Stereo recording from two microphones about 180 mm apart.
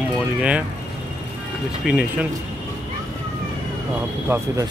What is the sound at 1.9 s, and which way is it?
Speech, 5° right (ahead or behind).